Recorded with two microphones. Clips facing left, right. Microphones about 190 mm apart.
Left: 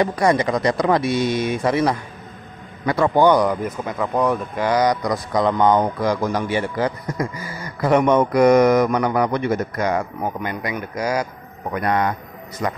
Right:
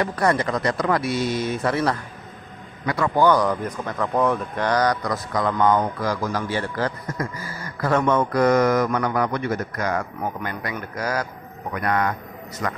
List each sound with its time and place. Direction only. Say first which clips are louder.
0.0 s a man's voice: left 4 dB; 15° left (ahead or behind)